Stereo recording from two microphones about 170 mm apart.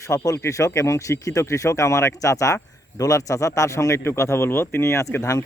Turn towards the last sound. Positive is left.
turn(degrees=20)  # may be behind; listen again after turning